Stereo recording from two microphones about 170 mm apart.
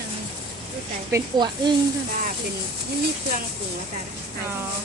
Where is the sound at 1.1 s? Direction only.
20° right (ahead or behind).